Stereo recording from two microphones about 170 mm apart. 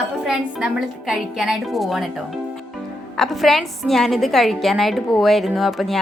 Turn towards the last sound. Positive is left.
turn(degrees=0)  # may be behind; listen again after turning